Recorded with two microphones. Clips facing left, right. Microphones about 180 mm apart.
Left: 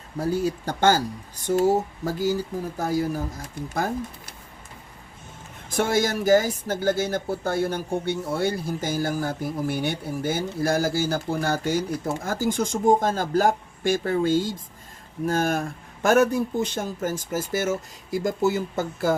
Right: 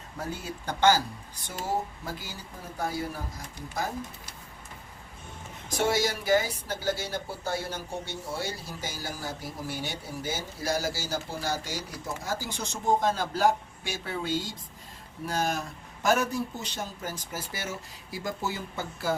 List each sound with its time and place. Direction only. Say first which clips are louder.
0.2 s speech: left 12 dB; 35° left (ahead or behind)
2.0 s speech: left 15 dB; 40° left (ahead or behind)
5.7 s speech: left 4 dB; 50° left (ahead or behind)